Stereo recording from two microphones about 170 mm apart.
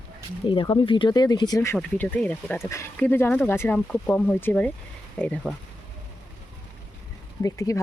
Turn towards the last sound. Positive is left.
turn(degrees=20)  # may be behind; listen again after turning